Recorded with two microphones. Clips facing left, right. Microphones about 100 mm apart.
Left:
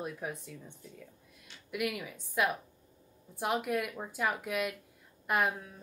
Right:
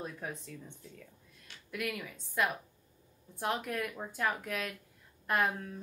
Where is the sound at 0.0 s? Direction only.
10° left (ahead or behind).